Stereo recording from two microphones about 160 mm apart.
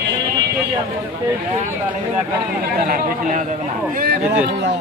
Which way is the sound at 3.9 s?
65° right (ahead or behind).